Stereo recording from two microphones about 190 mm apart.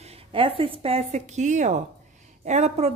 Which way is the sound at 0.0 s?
30° right (ahead or behind).